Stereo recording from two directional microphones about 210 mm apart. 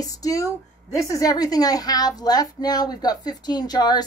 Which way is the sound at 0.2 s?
15° left (ahead or behind).